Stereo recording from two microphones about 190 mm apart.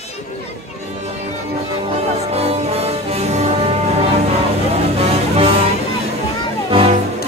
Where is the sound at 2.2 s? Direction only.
35° right (ahead or behind).